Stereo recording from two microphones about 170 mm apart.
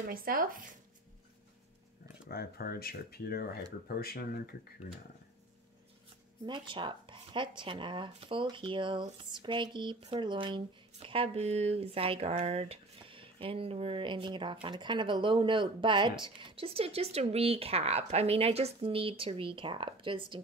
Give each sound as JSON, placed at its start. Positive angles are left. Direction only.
{"t": 0.1, "sound": "speech", "side_deg": -60}
{"t": 2.2, "sound": "speech", "side_deg": 65}
{"t": 6.4, "sound": "speech", "side_deg": -30}